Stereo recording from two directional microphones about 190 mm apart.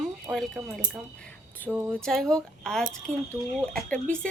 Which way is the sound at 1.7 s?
10° right (ahead or behind).